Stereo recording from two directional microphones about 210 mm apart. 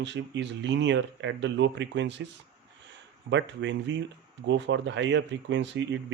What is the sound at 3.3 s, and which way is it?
Speech, 60° right (ahead or behind).